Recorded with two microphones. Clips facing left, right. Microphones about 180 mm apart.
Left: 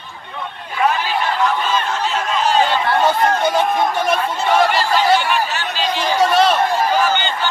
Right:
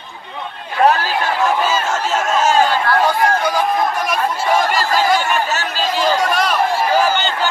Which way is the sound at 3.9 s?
30° left (ahead or behind).